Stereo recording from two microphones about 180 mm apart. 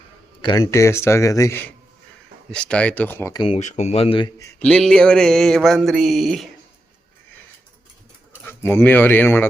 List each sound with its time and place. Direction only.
0.4 s a man's voice: 20° left (ahead or behind)
3.4 s speech: 40° left (ahead or behind)
4.6 s a sound: 5° left (ahead or behind)
8.4 s a man's voice: 10° left (ahead or behind)